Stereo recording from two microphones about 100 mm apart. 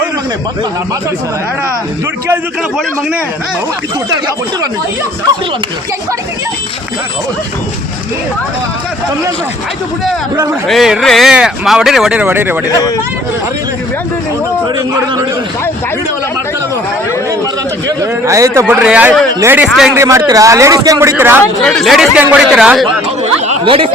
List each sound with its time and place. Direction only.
10.7 s speech: 5° right (ahead or behind); by 12.5 s 20° right (ahead or behind)
17.8 s a man's voice: 30° right (ahead or behind)
18.7 s speech: 10° right (ahead or behind)
19.9 s a man's voice: 30° right (ahead or behind)
21.2 s speech: 20° right (ahead or behind)
21.6 s speech: 5° left (ahead or behind)
22.2 s speech: 15° right (ahead or behind)
22.4 s speech: 5° right (ahead or behind)
23.2 s chatter: 65° right (ahead or behind)